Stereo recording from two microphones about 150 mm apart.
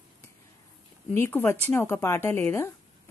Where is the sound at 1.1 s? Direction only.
15° left (ahead or behind).